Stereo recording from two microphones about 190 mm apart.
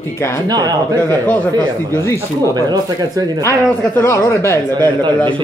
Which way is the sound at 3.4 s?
15° left (ahead or behind).